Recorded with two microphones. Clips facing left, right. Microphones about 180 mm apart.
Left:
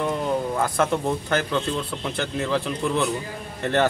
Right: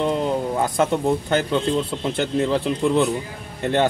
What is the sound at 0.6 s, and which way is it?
Speech, 20° right (ahead or behind).